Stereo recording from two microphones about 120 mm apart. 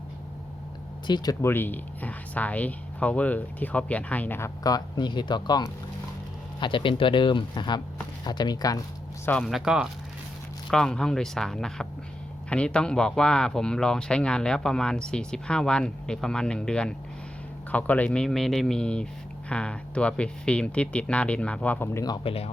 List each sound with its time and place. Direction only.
1.0 s speech: 35° left (ahead or behind)
1.4 s speech: 20° left (ahead or behind); by 8.8 s 35° left (ahead or behind)
9.4 s speech: centre (ahead or behind)
21.9 s speech: 35° left (ahead or behind)
22.2 s speech: 55° left (ahead or behind)